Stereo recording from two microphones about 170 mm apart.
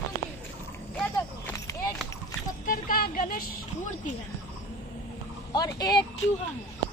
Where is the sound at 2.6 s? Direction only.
55° left (ahead or behind).